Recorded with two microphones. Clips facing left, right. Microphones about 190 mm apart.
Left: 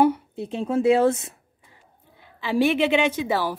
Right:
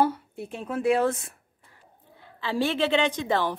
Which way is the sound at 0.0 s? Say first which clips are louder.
Left 5 dB; 20° left (ahead or behind).